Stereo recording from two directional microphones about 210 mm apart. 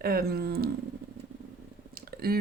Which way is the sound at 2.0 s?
45° right (ahead or behind).